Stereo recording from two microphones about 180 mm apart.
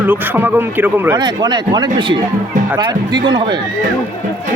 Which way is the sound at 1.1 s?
25° right (ahead or behind).